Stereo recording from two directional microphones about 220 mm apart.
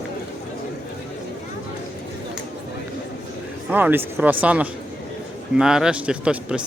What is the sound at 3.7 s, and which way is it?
A man's voice, 10° right (ahead or behind).